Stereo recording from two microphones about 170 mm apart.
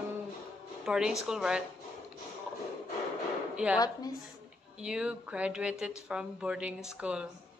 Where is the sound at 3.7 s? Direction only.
20° left (ahead or behind).